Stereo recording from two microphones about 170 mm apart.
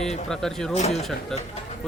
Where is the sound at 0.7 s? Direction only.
40° left (ahead or behind).